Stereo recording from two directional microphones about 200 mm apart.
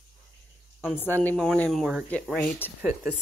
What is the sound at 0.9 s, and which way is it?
Speech, 10° left (ahead or behind).